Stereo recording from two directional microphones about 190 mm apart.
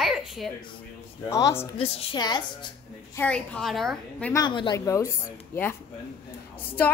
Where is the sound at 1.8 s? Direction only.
30° left (ahead or behind).